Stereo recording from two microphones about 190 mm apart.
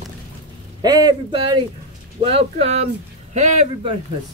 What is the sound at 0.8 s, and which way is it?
Speech, 20° right (ahead or behind).